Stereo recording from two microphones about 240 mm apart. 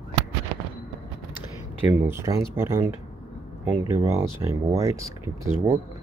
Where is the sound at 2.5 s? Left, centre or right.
Centre.